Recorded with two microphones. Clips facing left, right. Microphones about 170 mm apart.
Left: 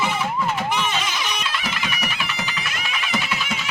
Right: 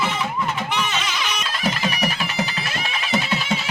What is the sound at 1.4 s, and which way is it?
Music, 40° right (ahead or behind).